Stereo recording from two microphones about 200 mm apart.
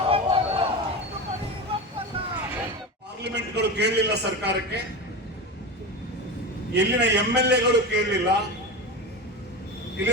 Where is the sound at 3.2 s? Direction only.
55° right (ahead or behind).